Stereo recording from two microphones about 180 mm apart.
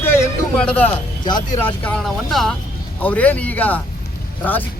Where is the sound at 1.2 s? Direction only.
25° left (ahead or behind).